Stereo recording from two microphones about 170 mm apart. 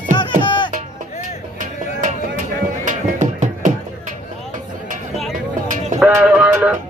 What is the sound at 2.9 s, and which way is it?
Music, 45° right (ahead or behind).